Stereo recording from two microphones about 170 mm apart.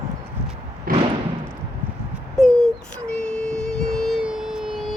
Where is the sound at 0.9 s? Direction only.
60° right (ahead or behind).